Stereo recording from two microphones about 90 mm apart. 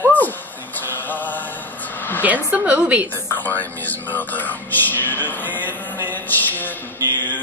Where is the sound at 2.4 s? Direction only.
15° right (ahead or behind).